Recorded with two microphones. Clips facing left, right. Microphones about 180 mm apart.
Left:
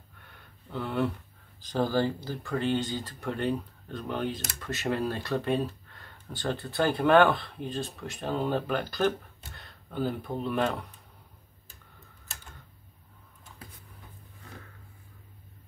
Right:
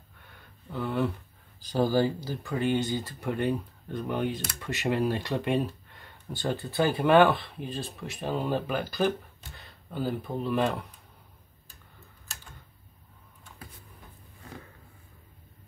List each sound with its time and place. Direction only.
0.7 s speech: 5° right (ahead or behind)